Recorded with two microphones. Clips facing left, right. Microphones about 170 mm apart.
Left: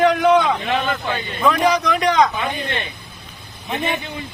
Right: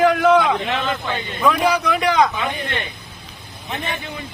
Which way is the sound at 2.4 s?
20° left (ahead or behind).